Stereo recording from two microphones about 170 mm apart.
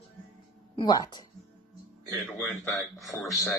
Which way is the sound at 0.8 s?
25° left (ahead or behind).